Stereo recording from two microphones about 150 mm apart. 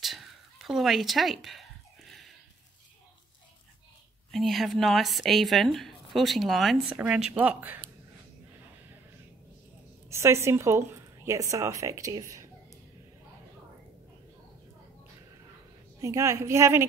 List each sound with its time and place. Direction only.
0.0 s a sound: centre (ahead or behind)
4.3 s speech: centre (ahead or behind)
10.0 s a woman's voice: 20° right (ahead or behind)
16.0 s a woman's voice: 20° right (ahead or behind)